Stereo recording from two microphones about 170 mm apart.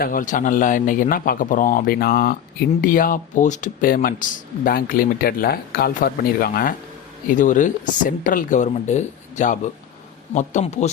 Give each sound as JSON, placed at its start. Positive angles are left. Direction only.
{"t": 0.0, "sound": "a man's voice", "side_deg": 50}